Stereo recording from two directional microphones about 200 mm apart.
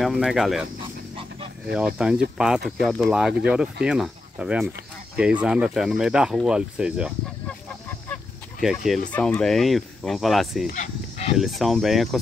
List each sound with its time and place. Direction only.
0.0 s speech: centre (ahead or behind)
1.7 s speech: 5° right (ahead or behind)
7.4 s fowl: 10° left (ahead or behind)
8.6 s speech: centre (ahead or behind)
10.7 s livestock: 35° left (ahead or behind)
11.3 s speech: centre (ahead or behind)